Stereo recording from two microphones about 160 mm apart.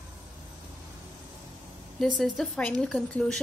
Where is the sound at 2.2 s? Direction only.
5° left (ahead or behind).